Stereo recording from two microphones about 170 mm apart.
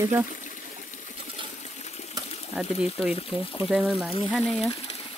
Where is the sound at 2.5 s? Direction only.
Centre (ahead or behind).